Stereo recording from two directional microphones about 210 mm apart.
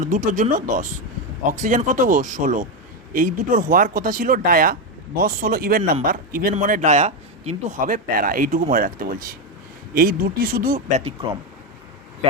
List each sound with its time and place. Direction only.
0.0 s a man's voice: 40° right (ahead or behind)